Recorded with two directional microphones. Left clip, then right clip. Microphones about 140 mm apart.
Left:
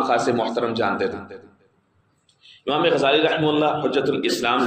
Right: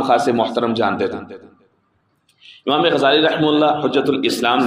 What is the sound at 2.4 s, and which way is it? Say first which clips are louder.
A man's voice: right 4 dB; 40° right (ahead or behind).